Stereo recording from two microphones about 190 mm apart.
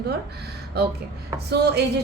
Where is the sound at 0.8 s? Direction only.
55° right (ahead or behind).